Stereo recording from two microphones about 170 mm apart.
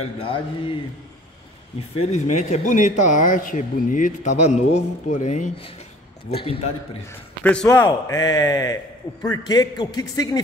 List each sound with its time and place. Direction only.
0.0 s speech: 30° left (ahead or behind)
2.0 s speech: 40° left (ahead or behind)
6.3 s speech: 35° left (ahead or behind)
7.1 s a man's voice: 5° left (ahead or behind)